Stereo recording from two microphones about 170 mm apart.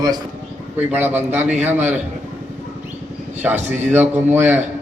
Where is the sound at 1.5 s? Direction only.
40° right (ahead or behind).